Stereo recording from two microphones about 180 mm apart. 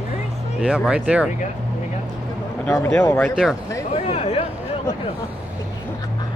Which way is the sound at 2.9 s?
10° left (ahead or behind).